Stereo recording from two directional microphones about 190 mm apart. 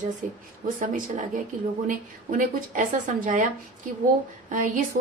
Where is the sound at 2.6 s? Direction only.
45° right (ahead or behind).